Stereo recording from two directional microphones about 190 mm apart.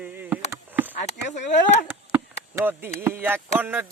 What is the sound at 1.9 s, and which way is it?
Chop, 10° right (ahead or behind).